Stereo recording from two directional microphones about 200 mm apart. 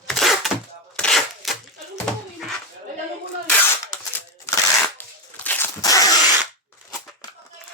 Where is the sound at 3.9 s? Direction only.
15° left (ahead or behind).